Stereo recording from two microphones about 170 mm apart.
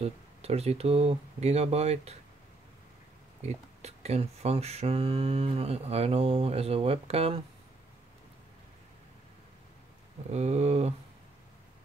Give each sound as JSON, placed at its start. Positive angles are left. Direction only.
{"t": 0.0, "sound": "speech", "side_deg": -35}
{"t": 3.4, "sound": "speech", "side_deg": -40}
{"t": 10.3, "sound": "speech", "side_deg": -40}